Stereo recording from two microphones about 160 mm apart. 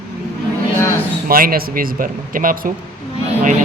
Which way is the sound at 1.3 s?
65° right (ahead or behind).